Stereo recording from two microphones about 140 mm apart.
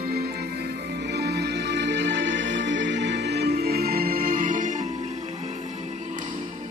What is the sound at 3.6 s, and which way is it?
Music, 90° right.